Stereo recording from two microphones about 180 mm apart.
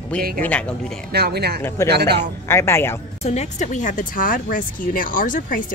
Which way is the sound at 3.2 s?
40° left (ahead or behind).